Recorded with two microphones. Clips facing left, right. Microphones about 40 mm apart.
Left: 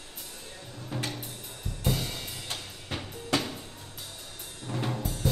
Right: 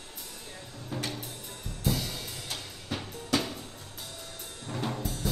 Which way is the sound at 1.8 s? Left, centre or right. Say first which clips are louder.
Even; left.